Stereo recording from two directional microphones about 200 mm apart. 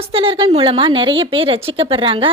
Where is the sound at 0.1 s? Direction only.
25° right (ahead or behind).